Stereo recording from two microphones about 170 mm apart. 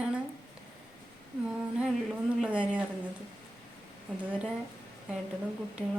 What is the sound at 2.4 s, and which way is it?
Speech, 5° right (ahead or behind).